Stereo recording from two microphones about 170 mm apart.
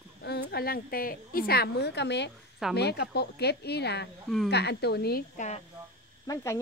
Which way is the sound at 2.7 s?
75° left (ahead or behind).